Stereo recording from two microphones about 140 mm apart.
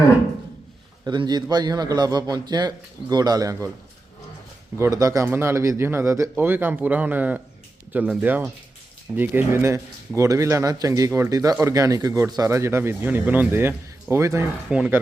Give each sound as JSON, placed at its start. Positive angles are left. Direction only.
{"t": 1.0, "sound": "speech", "side_deg": -30}
{"t": 4.8, "sound": "speech", "side_deg": -25}
{"t": 14.7, "sound": "speech", "side_deg": -5}